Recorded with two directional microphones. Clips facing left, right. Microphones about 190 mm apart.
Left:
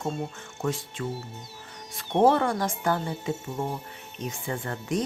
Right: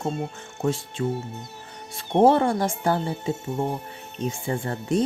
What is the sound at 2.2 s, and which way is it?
Speech, 25° right (ahead or behind).